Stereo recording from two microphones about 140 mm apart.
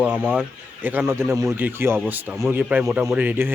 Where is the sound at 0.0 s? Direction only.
10° right (ahead or behind).